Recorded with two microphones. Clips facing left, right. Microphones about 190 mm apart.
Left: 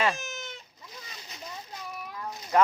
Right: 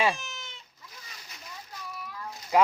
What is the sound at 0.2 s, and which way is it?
Goat, 45° left (ahead or behind).